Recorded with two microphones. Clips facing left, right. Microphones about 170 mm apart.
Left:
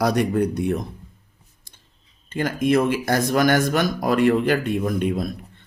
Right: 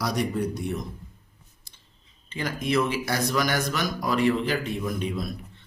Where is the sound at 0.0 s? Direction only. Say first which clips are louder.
Left 7 dB; 60° left (ahead or behind).